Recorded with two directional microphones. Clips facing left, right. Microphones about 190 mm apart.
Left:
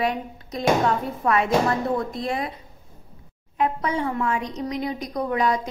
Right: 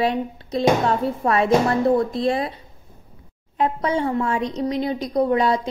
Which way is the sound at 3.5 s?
30° right (ahead or behind).